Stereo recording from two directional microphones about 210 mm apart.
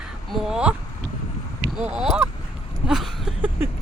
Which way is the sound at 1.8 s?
5° right (ahead or behind).